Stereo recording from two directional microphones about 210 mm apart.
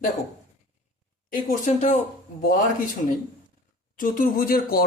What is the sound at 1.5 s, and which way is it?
Speech, 35° left (ahead or behind).